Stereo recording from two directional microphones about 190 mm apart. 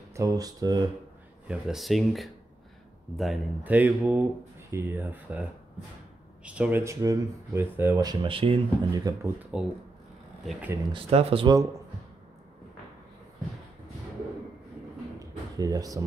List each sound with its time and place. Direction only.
0.1 s speech: 15° right (ahead or behind)
1.5 s speech: centre (ahead or behind); by 9.3 s 20° right (ahead or behind)
9.4 s speech: 5° right (ahead or behind)
10.9 s speech: 30° right (ahead or behind)
15.1 s a sound: 20° right (ahead or behind)